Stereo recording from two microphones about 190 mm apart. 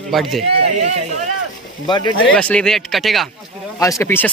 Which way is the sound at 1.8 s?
25° left (ahead or behind).